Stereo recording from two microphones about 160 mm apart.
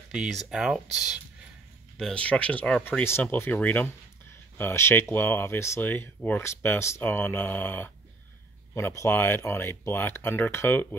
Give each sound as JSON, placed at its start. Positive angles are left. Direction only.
{"t": 0.1, "sound": "speech", "side_deg": 0}